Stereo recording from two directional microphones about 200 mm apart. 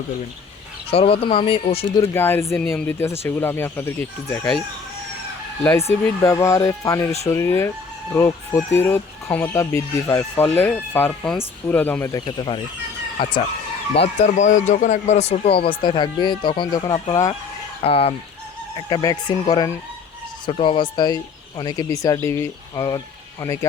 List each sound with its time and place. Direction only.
0.9 s speech: 30° left (ahead or behind)
2.0 s speech: 10° left (ahead or behind)
5.9 s speech: 15° left (ahead or behind)
12.2 s speech: 25° left (ahead or behind)
13.9 s speech: 30° left (ahead or behind)
17.8 s speech: 30° left (ahead or behind)